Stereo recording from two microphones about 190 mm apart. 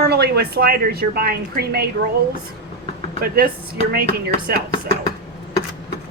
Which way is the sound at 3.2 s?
55° right (ahead or behind).